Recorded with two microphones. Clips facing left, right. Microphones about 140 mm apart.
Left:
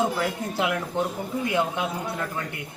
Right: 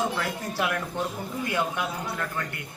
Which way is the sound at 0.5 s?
20° left (ahead or behind).